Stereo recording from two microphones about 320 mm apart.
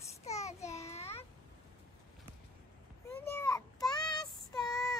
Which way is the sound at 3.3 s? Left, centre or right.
Centre.